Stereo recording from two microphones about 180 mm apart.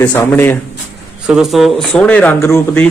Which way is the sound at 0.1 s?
10° left (ahead or behind).